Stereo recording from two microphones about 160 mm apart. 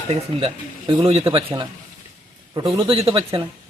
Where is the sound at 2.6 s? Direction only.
35° right (ahead or behind).